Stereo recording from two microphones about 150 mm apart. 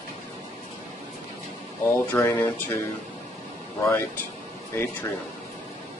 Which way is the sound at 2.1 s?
15° left (ahead or behind).